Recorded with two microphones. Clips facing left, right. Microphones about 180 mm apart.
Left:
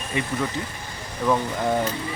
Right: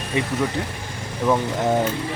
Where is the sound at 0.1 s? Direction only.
20° right (ahead or behind).